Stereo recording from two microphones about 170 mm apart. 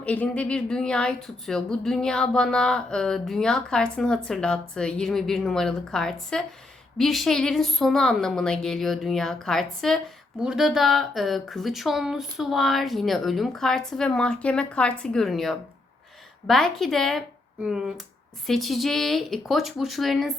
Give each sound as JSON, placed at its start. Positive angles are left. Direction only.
{"t": 0.0, "sound": "speech", "side_deg": 10}